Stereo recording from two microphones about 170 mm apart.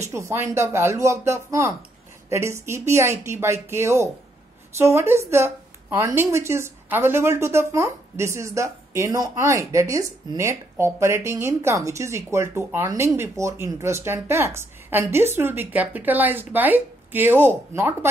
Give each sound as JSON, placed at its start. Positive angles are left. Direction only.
{"t": 0.1, "sound": "a woman's voice", "side_deg": -15}